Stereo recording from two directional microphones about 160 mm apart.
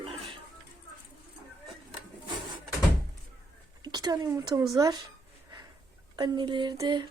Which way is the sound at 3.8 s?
25° right (ahead or behind).